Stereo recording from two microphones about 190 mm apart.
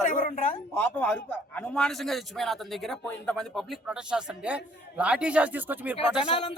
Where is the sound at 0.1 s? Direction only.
40° left (ahead or behind).